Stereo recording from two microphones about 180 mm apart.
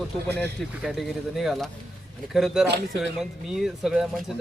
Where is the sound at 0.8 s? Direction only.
Centre (ahead or behind).